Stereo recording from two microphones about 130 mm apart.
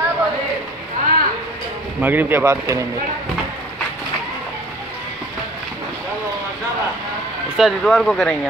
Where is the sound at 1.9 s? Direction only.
15° right (ahead or behind).